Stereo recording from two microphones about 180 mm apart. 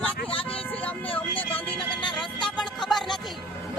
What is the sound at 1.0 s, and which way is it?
Vehicle, 30° left (ahead or behind).